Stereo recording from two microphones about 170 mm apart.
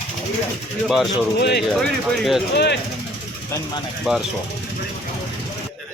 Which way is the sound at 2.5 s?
80° left.